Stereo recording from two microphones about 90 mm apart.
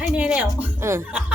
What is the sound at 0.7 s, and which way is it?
Speech, 30° right (ahead or behind).